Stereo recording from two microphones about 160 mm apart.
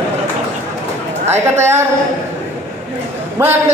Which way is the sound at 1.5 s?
15° right (ahead or behind).